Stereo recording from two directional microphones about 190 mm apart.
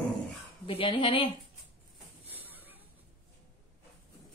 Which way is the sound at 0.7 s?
30° left (ahead or behind).